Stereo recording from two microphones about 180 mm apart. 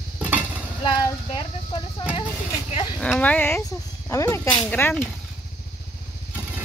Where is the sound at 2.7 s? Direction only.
30° left (ahead or behind).